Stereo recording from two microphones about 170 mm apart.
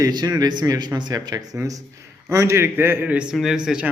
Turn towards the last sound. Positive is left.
turn(degrees=-5)  # may be behind; listen again after turning